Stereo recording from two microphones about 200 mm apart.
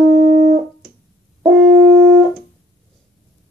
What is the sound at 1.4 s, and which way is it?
French horn, 15° right (ahead or behind).